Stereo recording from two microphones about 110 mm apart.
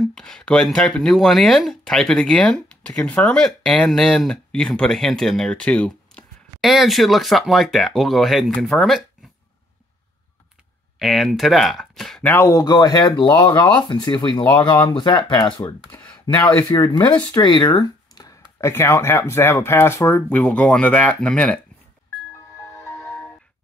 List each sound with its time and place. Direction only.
0.0 s speech: 5° left (ahead or behind)
6.6 s speech: centre (ahead or behind)
11.0 s speech: centre (ahead or behind)
12.2 s speech: 20° left (ahead or behind)